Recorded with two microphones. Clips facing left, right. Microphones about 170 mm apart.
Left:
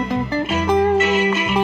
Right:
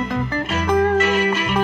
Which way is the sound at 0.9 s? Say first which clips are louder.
Left 1 dB; 5° left (ahead or behind).